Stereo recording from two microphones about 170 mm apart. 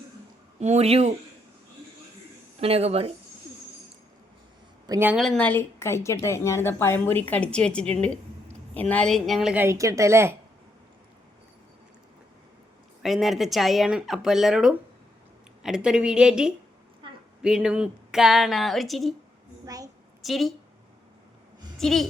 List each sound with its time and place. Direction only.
0.6 s speech: 40° right (ahead or behind)
2.6 s speech: 35° right (ahead or behind)
4.9 s a woman's voice: 15° right (ahead or behind)
5.1 s speech: centre (ahead or behind)
5.5 s a woman's voice: 15° left (ahead or behind); by 9.6 s 5° right (ahead or behind)
9.6 s a woman's voice: 20° right (ahead or behind)
13.0 s speech: centre (ahead or behind)
19.6 s a woman's voice: 20° right (ahead or behind)
20.2 s speech: centre (ahead or behind)
21.8 s speech: centre (ahead or behind)